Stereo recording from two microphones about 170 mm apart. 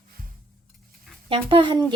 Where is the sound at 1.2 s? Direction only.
30° right (ahead or behind).